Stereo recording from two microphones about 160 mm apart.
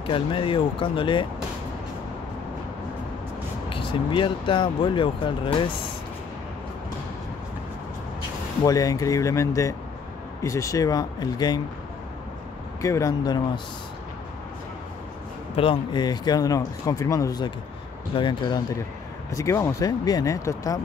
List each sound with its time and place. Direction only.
0.0 s speech: 35° left (ahead or behind)
3.7 s speech: 30° left (ahead or behind)
8.6 s speech: 20° left (ahead or behind)
12.8 s speech: 20° left (ahead or behind)
15.5 s speech: 35° left (ahead or behind)
19.3 s speech: 15° left (ahead or behind)